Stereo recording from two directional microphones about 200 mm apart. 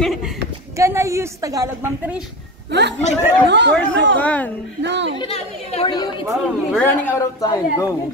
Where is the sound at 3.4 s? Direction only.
60° right (ahead or behind).